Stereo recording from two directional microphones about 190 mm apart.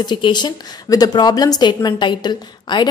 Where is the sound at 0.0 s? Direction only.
25° left (ahead or behind).